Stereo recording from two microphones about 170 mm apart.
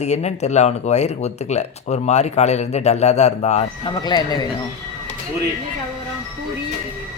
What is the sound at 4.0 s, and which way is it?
Speech, 25° left (ahead or behind).